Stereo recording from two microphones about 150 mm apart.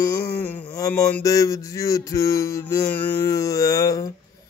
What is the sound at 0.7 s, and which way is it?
Mantra, 20° left (ahead or behind).